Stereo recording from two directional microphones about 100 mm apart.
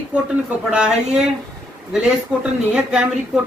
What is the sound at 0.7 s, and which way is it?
Speech, 10° right (ahead or behind).